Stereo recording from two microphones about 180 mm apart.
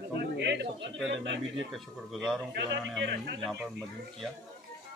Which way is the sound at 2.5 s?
70° right (ahead or behind).